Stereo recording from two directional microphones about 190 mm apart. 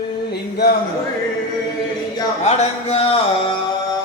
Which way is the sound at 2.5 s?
30° left (ahead or behind).